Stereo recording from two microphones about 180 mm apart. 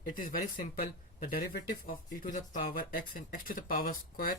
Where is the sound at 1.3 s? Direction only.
55° left (ahead or behind).